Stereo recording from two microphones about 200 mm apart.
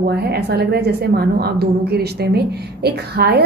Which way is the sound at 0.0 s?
50° right (ahead or behind).